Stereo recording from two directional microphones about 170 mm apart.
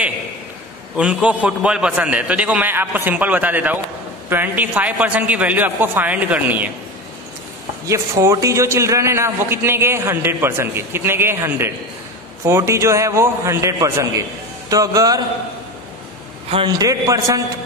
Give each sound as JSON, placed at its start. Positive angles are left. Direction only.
{"t": 0.9, "sound": "a man's voice", "side_deg": -5}
{"t": 7.8, "sound": "a man's voice", "side_deg": -20}
{"t": 16.6, "sound": "a man's voice", "side_deg": -20}